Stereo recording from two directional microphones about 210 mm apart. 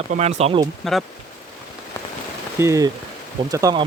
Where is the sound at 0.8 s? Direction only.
Centre (ahead or behind).